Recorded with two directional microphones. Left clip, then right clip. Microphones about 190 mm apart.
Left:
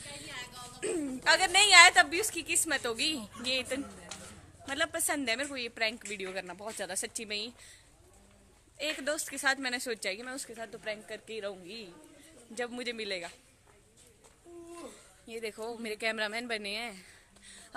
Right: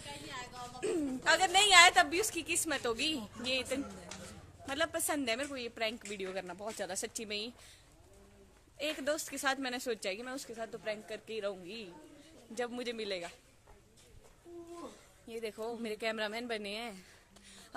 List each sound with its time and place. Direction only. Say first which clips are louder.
0.3 s music: left 3 dB; 20° right (ahead or behind)
0.7 s a woman's voice: left 1 dB; 5° left (ahead or behind)
8.7 s a woman's voice: left 2 dB; centre (ahead or behind)
15.2 s speech: left 1 dB; 10° left (ahead or behind)